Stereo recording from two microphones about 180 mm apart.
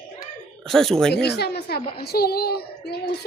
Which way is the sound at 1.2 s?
65° left (ahead or behind).